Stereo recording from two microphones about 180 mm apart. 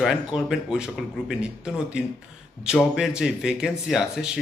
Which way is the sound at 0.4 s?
5° right (ahead or behind).